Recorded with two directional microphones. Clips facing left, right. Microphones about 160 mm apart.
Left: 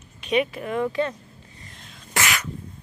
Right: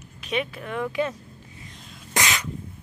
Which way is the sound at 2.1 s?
20° right (ahead or behind).